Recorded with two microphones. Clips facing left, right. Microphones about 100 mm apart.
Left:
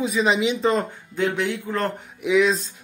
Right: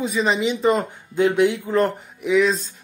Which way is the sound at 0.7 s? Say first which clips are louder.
Right 2 dB; 15° right (ahead or behind).